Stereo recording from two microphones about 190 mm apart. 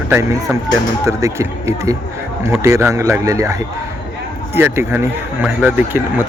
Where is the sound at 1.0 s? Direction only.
15° right (ahead or behind).